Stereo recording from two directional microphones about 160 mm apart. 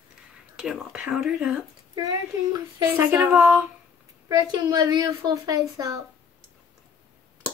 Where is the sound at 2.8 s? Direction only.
15° right (ahead or behind).